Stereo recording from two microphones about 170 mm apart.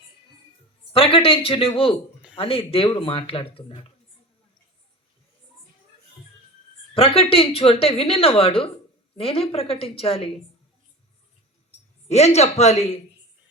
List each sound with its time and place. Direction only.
0.9 s a woman's voice: 35° left (ahead or behind)
6.9 s a woman's voice: 30° left (ahead or behind)
12.0 s a woman's voice: 40° left (ahead or behind)